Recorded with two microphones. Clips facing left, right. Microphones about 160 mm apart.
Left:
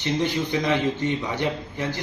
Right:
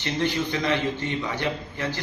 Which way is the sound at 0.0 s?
15° left (ahead or behind).